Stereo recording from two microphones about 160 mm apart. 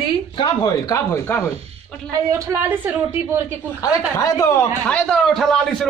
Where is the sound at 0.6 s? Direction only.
20° left (ahead or behind).